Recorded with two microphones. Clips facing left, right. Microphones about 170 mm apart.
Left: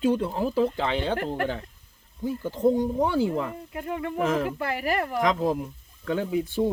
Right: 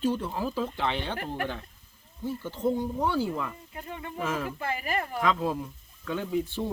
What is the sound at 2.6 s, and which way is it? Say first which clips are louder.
Speech: left 5 dB; 20° left (ahead or behind).